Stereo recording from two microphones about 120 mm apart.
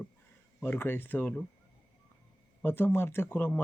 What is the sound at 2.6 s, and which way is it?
Speech, 20° left (ahead or behind).